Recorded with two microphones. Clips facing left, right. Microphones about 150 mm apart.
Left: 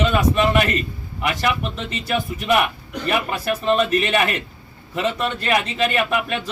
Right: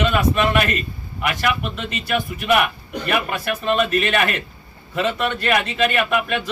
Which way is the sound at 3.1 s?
30° left (ahead or behind).